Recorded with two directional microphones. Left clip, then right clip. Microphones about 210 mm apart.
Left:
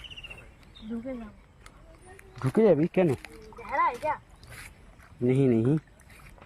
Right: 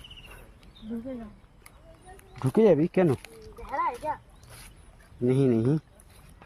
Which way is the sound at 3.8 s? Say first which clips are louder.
Left 3 dB; 10° left (ahead or behind).